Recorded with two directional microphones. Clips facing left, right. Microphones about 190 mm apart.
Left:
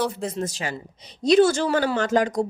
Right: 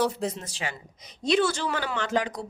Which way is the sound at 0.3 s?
45° left (ahead or behind).